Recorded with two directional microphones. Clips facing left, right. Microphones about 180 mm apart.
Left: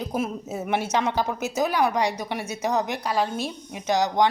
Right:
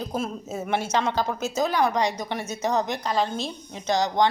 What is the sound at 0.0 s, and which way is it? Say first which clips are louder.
A woman's voice: left 2 dB; 15° left (ahead or behind).